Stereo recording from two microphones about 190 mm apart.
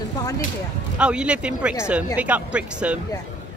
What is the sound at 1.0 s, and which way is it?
A woman's voice, 5° right (ahead or behind).